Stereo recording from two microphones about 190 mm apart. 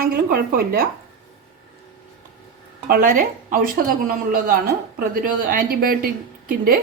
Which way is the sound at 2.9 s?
45° right (ahead or behind).